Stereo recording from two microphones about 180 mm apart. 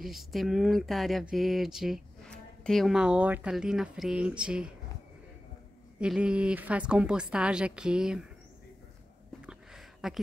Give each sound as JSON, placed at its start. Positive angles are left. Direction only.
{"t": 0.0, "sound": "speech", "side_deg": 0}
{"t": 5.9, "sound": "speech", "side_deg": -5}
{"t": 9.4, "sound": "a sound", "side_deg": -5}